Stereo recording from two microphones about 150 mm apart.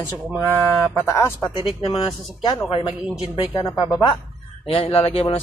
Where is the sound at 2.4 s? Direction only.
30° left (ahead or behind).